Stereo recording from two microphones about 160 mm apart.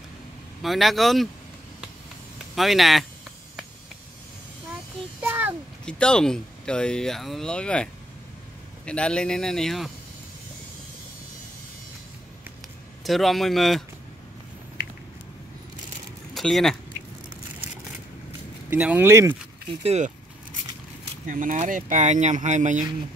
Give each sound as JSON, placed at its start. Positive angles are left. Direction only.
{"t": 0.6, "sound": "speech", "side_deg": 0}
{"t": 2.5, "sound": "speech", "side_deg": 0}
{"t": 5.2, "sound": "a sound", "side_deg": -15}
{"t": 5.9, "sound": "speech", "side_deg": 5}
{"t": 13.0, "sound": "speech", "side_deg": 0}
{"t": 16.3, "sound": "speech", "side_deg": 0}
{"t": 18.7, "sound": "speech", "side_deg": -10}
{"t": 19.8, "sound": "speech", "side_deg": -40}
{"t": 21.3, "sound": "speech", "side_deg": -55}